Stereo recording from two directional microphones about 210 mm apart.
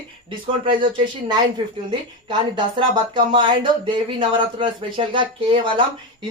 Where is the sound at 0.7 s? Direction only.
20° right (ahead or behind).